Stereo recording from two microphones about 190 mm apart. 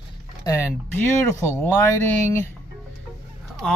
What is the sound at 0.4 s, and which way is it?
Speech, 15° left (ahead or behind).